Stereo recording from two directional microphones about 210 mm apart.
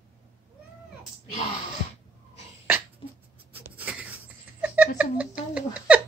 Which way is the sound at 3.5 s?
5° right (ahead or behind).